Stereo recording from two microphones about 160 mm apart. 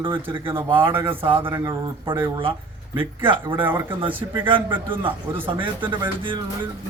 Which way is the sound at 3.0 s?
30° right (ahead or behind).